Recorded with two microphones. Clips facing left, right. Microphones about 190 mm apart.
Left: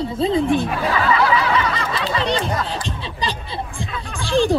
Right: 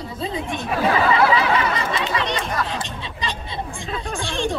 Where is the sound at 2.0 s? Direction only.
30° left (ahead or behind).